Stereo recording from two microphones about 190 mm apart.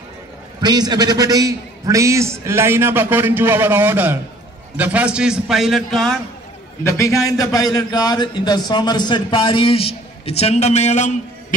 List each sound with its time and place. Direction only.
0.6 s a man's voice: 20° right (ahead or behind); by 6.1 s centre (ahead or behind)
7.0 s speech: 15° left (ahead or behind); by 11.1 s 35° left (ahead or behind)